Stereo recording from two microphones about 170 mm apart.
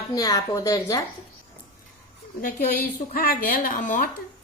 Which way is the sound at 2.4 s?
55° left (ahead or behind).